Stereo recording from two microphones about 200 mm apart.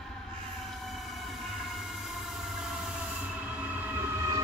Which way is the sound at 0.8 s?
Centre (ahead or behind).